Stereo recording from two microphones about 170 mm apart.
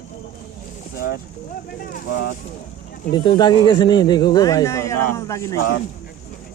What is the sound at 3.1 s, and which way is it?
Speech, 25° left (ahead or behind).